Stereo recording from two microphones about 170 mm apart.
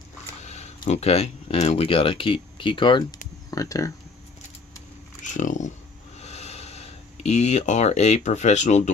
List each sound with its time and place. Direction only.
0.4 s speech: 40° left (ahead or behind); by 3.9 s 20° left (ahead or behind)
5.2 s speech: 45° left (ahead or behind)
6.1 s a sound: 40° left (ahead or behind)